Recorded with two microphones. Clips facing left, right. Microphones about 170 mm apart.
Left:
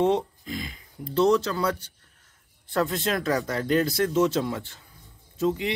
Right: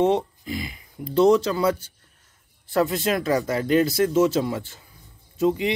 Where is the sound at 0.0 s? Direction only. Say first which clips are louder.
Right 2 dB; 5° right (ahead or behind).